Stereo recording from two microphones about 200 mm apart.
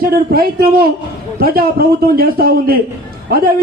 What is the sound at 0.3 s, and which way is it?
A man's voice, 50° right (ahead or behind).